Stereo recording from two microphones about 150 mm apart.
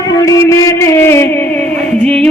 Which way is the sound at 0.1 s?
25° left (ahead or behind).